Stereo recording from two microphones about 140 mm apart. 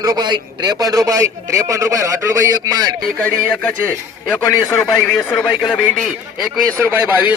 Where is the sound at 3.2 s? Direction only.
10° left (ahead or behind).